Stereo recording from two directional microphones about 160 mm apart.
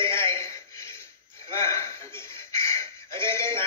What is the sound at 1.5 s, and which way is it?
Chuckle, 20° left (ahead or behind).